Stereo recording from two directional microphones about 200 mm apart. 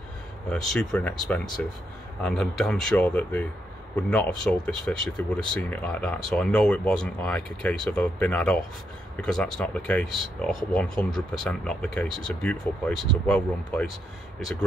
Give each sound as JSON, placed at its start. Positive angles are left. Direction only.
{"t": 0.5, "sound": "speech", "side_deg": 0}